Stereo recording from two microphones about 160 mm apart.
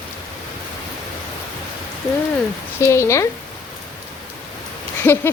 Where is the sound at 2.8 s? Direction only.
20° left (ahead or behind).